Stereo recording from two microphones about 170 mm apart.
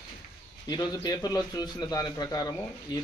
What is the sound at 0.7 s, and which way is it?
A man's voice, 25° left (ahead or behind).